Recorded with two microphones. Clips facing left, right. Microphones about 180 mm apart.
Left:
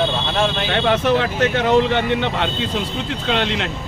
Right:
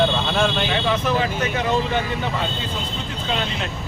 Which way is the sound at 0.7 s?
70° left (ahead or behind).